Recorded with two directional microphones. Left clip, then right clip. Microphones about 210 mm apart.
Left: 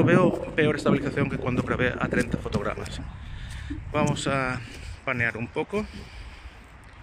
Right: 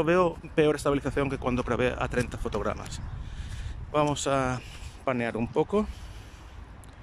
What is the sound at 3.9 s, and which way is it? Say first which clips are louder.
Speech: right 1 dB; 10° right (ahead or behind).